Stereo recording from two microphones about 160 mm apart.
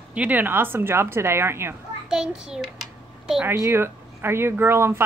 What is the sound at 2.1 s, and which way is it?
A child's voice, 5° right (ahead or behind).